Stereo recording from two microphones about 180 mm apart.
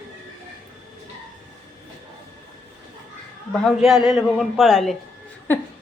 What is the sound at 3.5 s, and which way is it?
A woman's voice, centre (ahead or behind).